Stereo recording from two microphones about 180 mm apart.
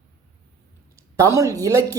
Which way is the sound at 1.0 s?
15° right (ahead or behind).